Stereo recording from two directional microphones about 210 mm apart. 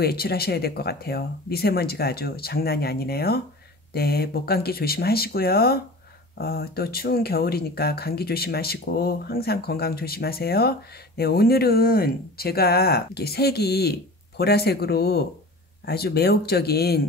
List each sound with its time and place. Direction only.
0.0 s speech: 45° left (ahead or behind)